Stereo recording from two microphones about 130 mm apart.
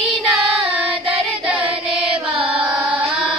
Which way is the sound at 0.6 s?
40° right (ahead or behind).